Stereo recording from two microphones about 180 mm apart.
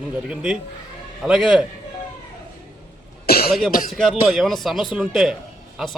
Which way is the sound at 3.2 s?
55° left (ahead or behind).